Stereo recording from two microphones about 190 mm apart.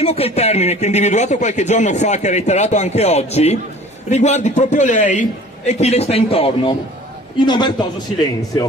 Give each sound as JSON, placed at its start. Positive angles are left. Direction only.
{"t": 0.0, "sound": "a man's voice", "side_deg": 30}